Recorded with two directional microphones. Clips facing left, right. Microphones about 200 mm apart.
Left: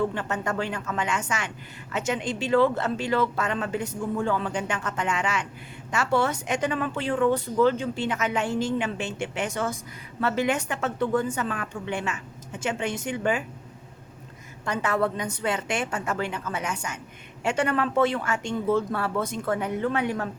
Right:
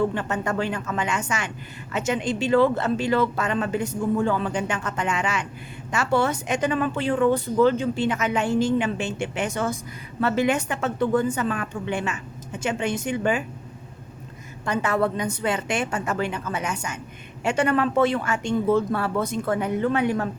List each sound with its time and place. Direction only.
0.1 s a woman's voice: 15° right (ahead or behind)
14.6 s a woman's voice: 15° right (ahead or behind)